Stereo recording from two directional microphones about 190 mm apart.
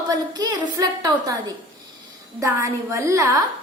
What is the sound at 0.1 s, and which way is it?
A woman's voice, 20° right (ahead or behind).